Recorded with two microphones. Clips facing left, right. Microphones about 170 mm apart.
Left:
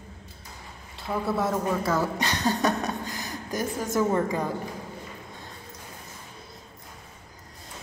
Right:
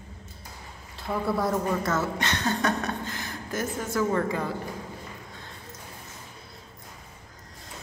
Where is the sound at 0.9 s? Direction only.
Centre (ahead or behind); by 4.5 s 15° left (ahead or behind).